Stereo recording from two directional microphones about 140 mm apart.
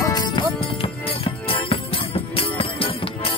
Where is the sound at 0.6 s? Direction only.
40° left (ahead or behind).